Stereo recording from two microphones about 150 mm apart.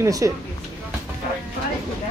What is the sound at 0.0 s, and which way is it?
Speech, 20° right (ahead or behind).